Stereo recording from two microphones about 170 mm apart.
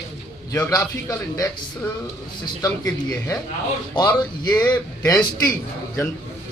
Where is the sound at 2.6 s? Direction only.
20° left (ahead or behind).